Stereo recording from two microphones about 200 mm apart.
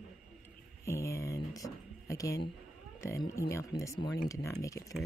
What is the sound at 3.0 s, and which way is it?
A woman's voice, 15° left (ahead or behind).